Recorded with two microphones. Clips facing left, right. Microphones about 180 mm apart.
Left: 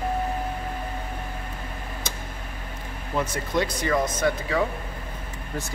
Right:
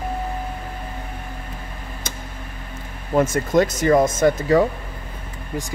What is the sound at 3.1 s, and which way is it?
Speech, 45° right (ahead or behind).